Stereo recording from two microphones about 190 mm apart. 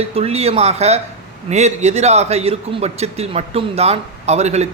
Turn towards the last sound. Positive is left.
turn(degrees=-35)  # may be behind; listen again after turning